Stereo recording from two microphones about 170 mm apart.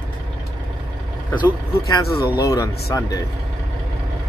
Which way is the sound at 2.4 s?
20° left (ahead or behind).